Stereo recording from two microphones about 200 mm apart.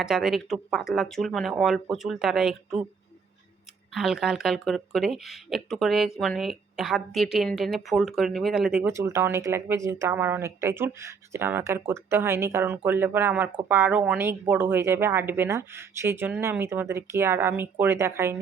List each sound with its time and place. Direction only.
0.0 s speech: centre (ahead or behind)
3.9 s speech: centre (ahead or behind)